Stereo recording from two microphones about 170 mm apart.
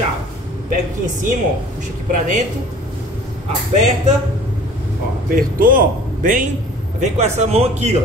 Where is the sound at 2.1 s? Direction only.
50° right (ahead or behind).